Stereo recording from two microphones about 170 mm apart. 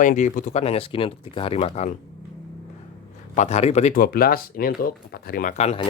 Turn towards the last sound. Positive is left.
turn(degrees=35)  # may be behind; listen again after turning